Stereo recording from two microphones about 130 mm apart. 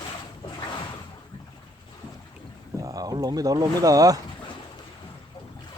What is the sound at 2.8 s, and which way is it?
Speech, 30° right (ahead or behind).